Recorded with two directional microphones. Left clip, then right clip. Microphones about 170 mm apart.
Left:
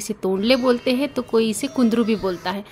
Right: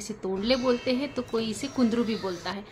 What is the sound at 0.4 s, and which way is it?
Speech, 45° left (ahead or behind).